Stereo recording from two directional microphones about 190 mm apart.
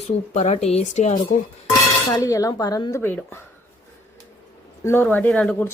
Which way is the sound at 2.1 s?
20° left (ahead or behind).